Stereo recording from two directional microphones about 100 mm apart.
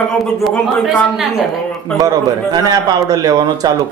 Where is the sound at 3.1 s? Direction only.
40° right (ahead or behind).